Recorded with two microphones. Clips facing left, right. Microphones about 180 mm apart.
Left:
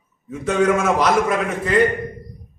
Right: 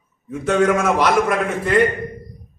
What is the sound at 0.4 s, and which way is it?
Speech, centre (ahead or behind).